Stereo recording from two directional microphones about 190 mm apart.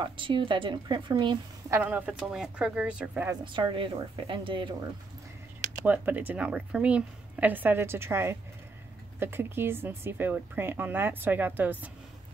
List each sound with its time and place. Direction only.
0.0 s a woman's voice: 25° right (ahead or behind)
1.8 s a woman's voice: 10° right (ahead or behind)
3.3 s a woman's voice: 25° right (ahead or behind)
5.9 s speech: 10° right (ahead or behind)